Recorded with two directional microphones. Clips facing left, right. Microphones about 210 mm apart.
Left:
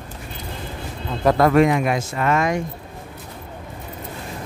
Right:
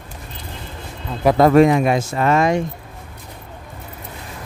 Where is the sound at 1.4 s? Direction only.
30° right (ahead or behind).